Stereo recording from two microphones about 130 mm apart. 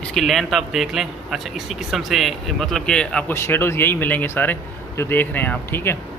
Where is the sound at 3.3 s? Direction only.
20° left (ahead or behind).